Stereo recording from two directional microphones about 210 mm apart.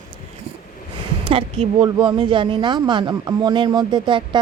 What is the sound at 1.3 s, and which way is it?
A woman's voice, 25° right (ahead or behind).